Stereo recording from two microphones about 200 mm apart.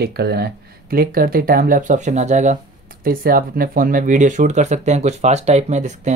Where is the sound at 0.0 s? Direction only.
55° right (ahead or behind).